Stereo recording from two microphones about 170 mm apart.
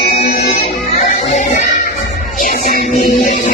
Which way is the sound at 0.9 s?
45° left (ahead or behind).